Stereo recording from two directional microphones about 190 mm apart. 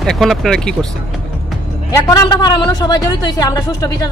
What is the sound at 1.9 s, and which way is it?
A man's voice, 15° left (ahead or behind).